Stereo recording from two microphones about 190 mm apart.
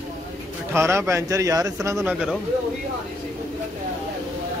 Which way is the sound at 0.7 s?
15° right (ahead or behind).